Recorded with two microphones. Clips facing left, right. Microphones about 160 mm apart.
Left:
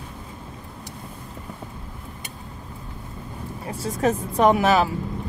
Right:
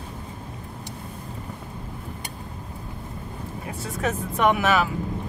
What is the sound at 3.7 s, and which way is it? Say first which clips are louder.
Speech: left 5 dB; 35° left (ahead or behind).